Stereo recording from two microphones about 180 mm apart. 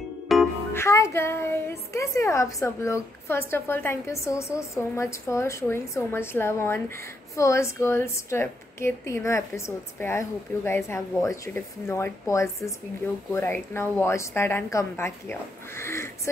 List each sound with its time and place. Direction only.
0.3 s music: centre (ahead or behind)
0.7 s a woman's voice: 15° left (ahead or behind)